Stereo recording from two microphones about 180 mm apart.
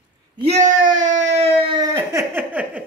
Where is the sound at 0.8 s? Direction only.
45° right (ahead or behind).